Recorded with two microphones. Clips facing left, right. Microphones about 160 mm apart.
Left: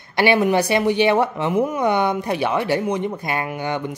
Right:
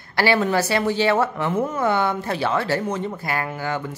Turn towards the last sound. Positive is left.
turn(degrees=20)  # may be behind; listen again after turning